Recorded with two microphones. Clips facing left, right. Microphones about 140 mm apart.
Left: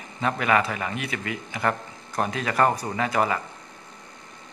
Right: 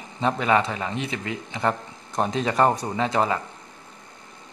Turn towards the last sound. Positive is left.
turn(degrees=5)  # may be behind; listen again after turning